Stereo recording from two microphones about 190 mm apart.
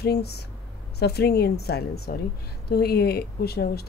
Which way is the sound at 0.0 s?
60° left (ahead or behind).